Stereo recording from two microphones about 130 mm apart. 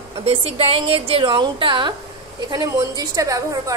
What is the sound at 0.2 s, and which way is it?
A woman's voice, 50° right (ahead or behind).